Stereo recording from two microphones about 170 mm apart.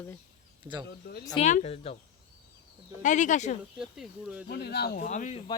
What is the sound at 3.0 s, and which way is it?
Speech, 45° left (ahead or behind).